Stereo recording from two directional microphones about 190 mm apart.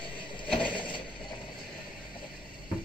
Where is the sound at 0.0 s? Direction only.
25° left (ahead or behind).